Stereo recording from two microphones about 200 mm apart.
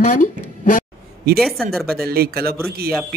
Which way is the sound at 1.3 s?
Centre (ahead or behind).